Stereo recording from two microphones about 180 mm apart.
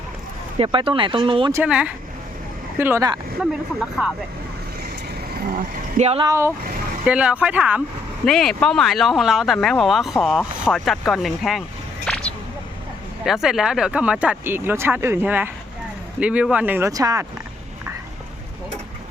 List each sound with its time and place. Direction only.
0.6 s speech: 30° right (ahead or behind)
1.5 s speech: 5° right (ahead or behind)
3.4 s speech: 5° right (ahead or behind)
6.0 s speech: 35° right (ahead or behind)
6.2 s speech: 15° right (ahead or behind); by 11.6 s centre (ahead or behind)
12.1 s music: 5° left (ahead or behind)
13.2 s speech: centre (ahead or behind); by 17.2 s 20° right (ahead or behind)